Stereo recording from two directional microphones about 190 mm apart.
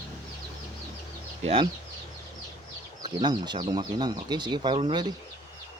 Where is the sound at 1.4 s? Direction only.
30° right (ahead or behind).